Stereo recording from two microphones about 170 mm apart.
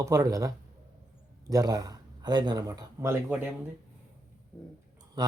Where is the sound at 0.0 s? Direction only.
20° right (ahead or behind).